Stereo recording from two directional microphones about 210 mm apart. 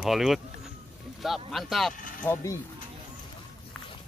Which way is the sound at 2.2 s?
10° left (ahead or behind).